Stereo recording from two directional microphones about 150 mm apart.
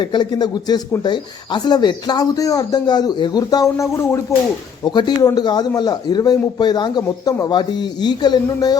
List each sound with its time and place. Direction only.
0.0 s speech: 30° left (ahead or behind)
4.8 s speech: 30° left (ahead or behind)